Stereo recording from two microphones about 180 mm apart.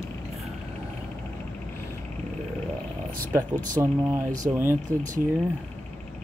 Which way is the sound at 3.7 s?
20° right (ahead or behind).